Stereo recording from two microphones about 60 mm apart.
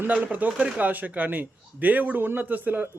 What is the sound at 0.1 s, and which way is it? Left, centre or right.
Speech, right.